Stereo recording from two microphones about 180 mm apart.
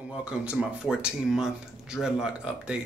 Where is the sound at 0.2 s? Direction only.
5° right (ahead or behind).